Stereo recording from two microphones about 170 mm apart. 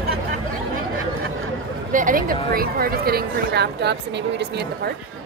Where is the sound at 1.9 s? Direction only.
50° right (ahead or behind); by 4.9 s 80° right.